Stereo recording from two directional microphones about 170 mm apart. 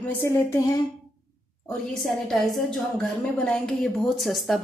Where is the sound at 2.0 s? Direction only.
Centre (ahead or behind).